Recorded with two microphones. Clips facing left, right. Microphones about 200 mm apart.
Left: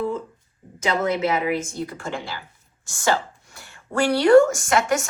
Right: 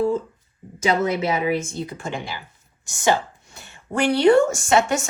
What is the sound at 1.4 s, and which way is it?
Speech, 25° right (ahead or behind).